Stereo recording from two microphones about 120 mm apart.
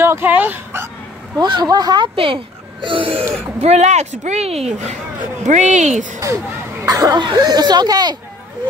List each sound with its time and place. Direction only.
0.0 s speech: 20° right (ahead or behind)
1.4 s speech: 35° right (ahead or behind)
2.1 s speech: 45° right (ahead or behind)
3.6 s a woman's voice: 70° right (ahead or behind)
5.4 s speech: 90° right
6.9 s speech: 30° right (ahead or behind)